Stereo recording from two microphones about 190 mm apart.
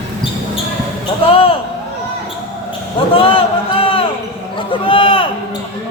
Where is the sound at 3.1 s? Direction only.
30° left (ahead or behind).